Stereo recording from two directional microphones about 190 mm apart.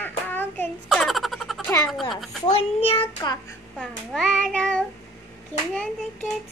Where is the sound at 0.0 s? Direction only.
10° left (ahead or behind).